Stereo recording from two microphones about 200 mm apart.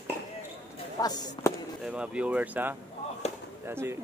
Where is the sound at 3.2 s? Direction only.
30° left (ahead or behind).